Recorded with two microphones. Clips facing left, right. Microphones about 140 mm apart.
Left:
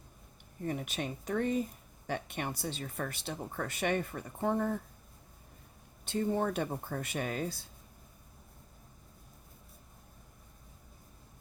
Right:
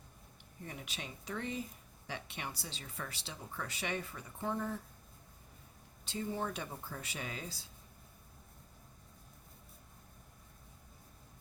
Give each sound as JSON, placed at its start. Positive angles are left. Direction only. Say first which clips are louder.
{"t": 0.6, "sound": "speech", "louder": "left 10 dB", "side_deg": 50}
{"t": 6.1, "sound": "speech", "louder": "left 7 dB", "side_deg": 55}